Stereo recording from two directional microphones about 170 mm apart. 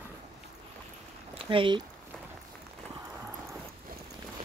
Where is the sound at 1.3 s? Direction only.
30° right (ahead or behind).